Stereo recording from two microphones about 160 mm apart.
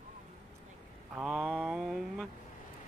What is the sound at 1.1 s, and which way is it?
Mantra, centre (ahead or behind).